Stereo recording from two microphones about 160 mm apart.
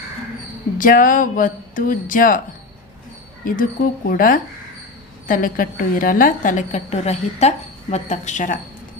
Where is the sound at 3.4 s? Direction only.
60° left (ahead or behind).